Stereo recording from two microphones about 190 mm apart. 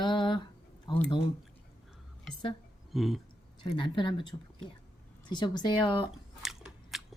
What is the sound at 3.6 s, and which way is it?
Speech, 25° left (ahead or behind).